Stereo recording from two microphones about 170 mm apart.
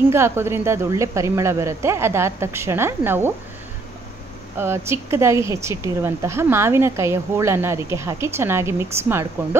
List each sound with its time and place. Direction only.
0.1 s speech: 15° right (ahead or behind)
4.6 s speech: 15° right (ahead or behind)